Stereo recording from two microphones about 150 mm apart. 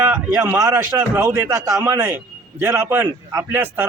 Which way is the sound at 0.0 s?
15° right (ahead or behind).